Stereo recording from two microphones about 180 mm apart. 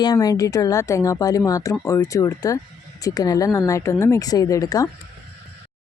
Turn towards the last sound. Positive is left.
turn(degrees=20)  # may be behind; listen again after turning